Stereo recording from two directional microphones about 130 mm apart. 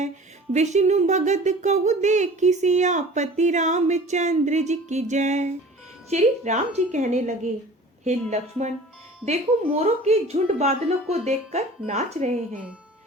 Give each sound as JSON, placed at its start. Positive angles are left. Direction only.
{"t": 0.5, "sound": "speech", "side_deg": -60}